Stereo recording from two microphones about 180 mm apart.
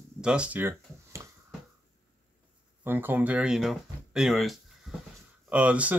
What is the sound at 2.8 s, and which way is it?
Speech, 10° right (ahead or behind).